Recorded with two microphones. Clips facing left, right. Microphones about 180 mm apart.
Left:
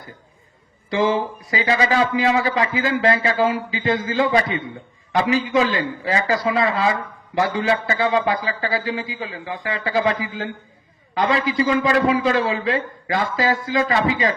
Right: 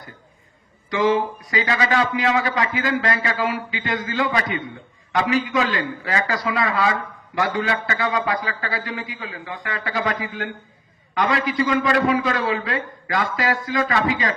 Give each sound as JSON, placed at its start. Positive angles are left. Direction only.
{"t": 0.9, "sound": "a man's voice", "side_deg": 25}